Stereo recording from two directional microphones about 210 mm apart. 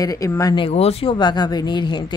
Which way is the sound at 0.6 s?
30° left (ahead or behind).